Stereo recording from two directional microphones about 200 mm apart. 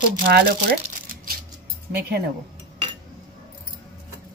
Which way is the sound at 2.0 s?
55° right (ahead or behind).